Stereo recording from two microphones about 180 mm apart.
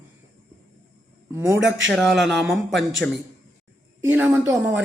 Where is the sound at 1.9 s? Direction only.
Centre (ahead or behind).